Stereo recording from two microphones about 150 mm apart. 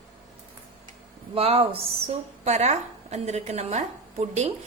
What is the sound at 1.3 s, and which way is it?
A woman's voice, 40° right (ahead or behind).